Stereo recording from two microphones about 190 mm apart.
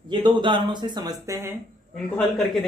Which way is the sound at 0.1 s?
25° right (ahead or behind).